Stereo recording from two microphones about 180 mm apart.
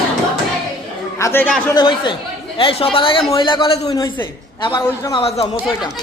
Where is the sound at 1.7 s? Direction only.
25° left (ahead or behind).